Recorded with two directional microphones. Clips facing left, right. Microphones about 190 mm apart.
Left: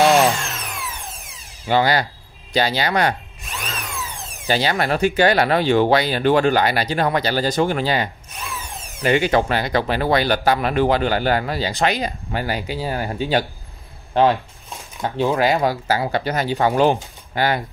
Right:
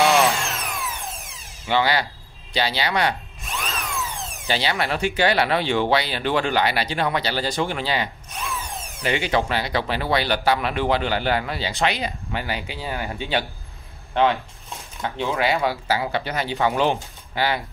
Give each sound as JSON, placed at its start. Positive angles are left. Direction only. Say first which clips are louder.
{"t": 0.3, "sound": "a sound", "louder": "left 1 dB", "side_deg": 0}
{"t": 1.7, "sound": "speech", "louder": "left 3 dB", "side_deg": 45}
{"t": 3.4, "sound": "drill", "louder": "right 1 dB", "side_deg": 0}
{"t": 4.5, "sound": "speech", "louder": "left 4 dB", "side_deg": 45}
{"t": 8.5, "sound": "drill", "louder": "right 1 dB", "side_deg": 0}
{"t": 9.0, "sound": "speech", "louder": "left 5 dB", "side_deg": 45}